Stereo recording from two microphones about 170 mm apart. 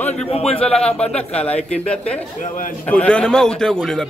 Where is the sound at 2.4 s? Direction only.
50° left (ahead or behind).